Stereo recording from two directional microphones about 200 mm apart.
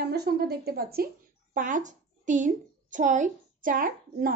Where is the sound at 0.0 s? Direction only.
55° right (ahead or behind).